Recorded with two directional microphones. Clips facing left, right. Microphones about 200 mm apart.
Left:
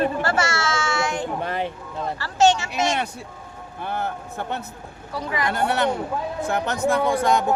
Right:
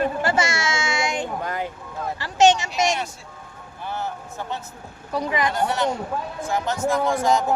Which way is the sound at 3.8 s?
55° left (ahead or behind).